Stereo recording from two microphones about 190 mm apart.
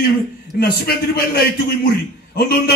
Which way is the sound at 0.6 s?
55° left (ahead or behind).